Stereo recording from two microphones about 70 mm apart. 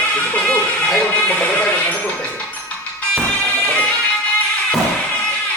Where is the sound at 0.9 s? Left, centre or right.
Centre.